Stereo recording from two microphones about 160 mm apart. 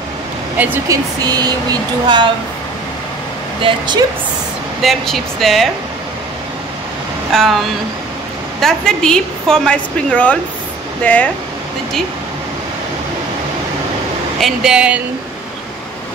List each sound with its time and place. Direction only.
0.6 s speech: 20° right (ahead or behind)
3.6 s speech: 30° right (ahead or behind)
4.8 s a woman's voice: centre (ahead or behind)
7.3 s a woman's voice: centre (ahead or behind)
14.4 s a woman's voice: 5° right (ahead or behind)